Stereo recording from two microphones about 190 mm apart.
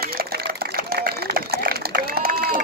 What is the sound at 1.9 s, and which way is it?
Run, 50° right (ahead or behind).